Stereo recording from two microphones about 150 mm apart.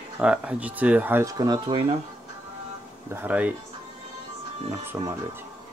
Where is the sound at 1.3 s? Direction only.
30° right (ahead or behind).